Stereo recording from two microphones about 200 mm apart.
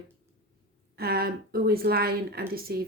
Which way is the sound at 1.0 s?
50° right (ahead or behind).